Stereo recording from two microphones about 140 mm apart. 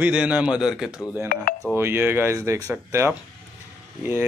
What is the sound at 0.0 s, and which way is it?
Speech, 10° right (ahead or behind).